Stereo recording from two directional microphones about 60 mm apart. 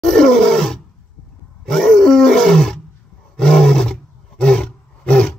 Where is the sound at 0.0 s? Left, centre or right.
Centre.